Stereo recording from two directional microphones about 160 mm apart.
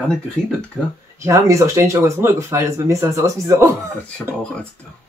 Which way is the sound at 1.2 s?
20° right (ahead or behind).